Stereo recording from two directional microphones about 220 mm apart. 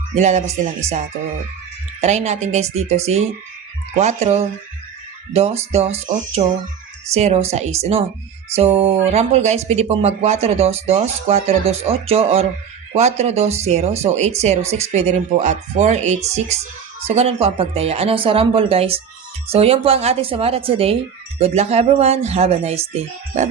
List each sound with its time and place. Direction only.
0.1 s speech: 30° right (ahead or behind)
2.0 s speech: 30° right (ahead or behind)